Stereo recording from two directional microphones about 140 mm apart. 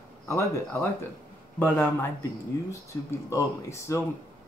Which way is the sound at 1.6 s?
15° left (ahead or behind).